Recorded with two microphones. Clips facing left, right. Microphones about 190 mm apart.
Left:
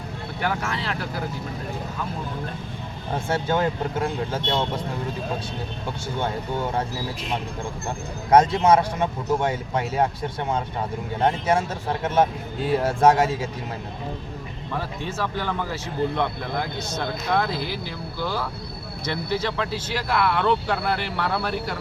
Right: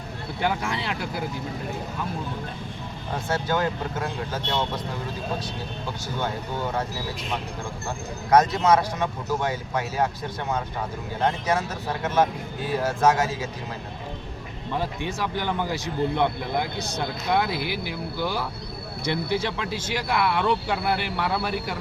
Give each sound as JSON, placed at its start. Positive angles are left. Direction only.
{"t": 0.4, "sound": "speech", "side_deg": -15}
{"t": 3.2, "sound": "speech", "side_deg": 25}
{"t": 8.3, "sound": "speech", "side_deg": 30}
{"t": 11.2, "sound": "speech", "side_deg": 25}
{"t": 14.8, "sound": "speech", "side_deg": -15}